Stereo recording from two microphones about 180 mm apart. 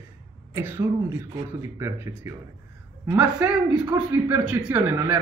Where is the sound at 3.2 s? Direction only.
5° right (ahead or behind).